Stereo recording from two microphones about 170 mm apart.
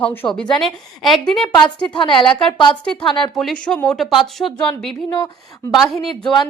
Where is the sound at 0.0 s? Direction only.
10° left (ahead or behind).